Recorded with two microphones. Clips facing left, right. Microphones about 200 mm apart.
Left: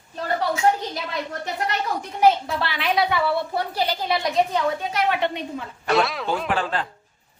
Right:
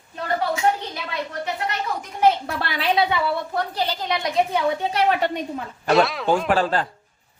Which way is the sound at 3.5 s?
10° left (ahead or behind).